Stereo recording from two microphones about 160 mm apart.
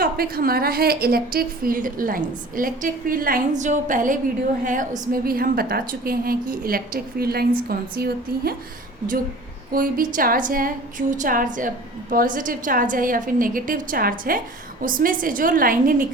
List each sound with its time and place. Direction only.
0.0 s a woman's voice: 70° right (ahead or behind)
9.7 s a woman's voice: 65° right (ahead or behind)